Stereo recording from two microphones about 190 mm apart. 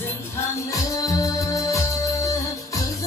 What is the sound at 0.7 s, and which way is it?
Music, 15° left (ahead or behind).